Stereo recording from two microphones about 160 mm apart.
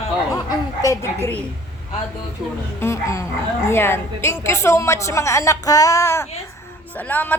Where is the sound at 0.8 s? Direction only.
20° left (ahead or behind).